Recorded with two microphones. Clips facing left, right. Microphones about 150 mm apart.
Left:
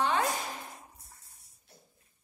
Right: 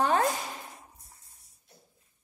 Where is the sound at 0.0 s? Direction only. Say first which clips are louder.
Right 4 dB; 45° right (ahead or behind).